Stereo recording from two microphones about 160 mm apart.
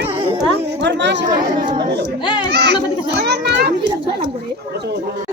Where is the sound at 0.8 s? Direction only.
90° right.